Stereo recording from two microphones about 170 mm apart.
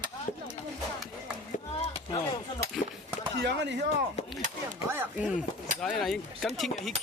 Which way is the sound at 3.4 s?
90° right.